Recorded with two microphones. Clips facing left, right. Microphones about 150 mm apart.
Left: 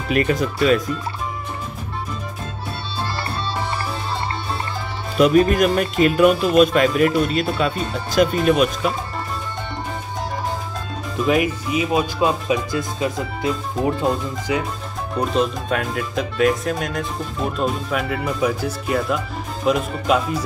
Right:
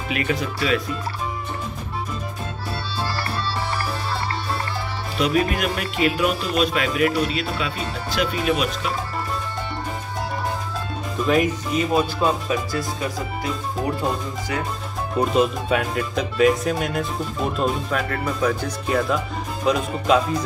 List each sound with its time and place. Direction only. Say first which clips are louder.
0.1 s speech: left 6 dB; 45° left (ahead or behind)
5.1 s speech: left 7 dB; 45° left (ahead or behind)
11.2 s speech: left 1 dB; 5° left (ahead or behind)
12.4 s speech: left 3 dB; 20° left (ahead or behind)
14.5 s speech: left 5 dB; 20° left (ahead or behind)
15.1 s speech: right 1 dB; 5° right (ahead or behind)